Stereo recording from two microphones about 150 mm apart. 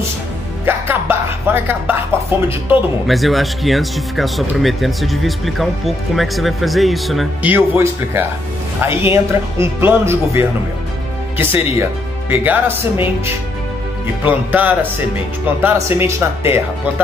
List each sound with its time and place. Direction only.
0.7 s music: 15° right (ahead or behind)
3.1 s speech: centre (ahead or behind)
7.4 s speech: 15° right (ahead or behind)
11.3 s speech: 15° right (ahead or behind)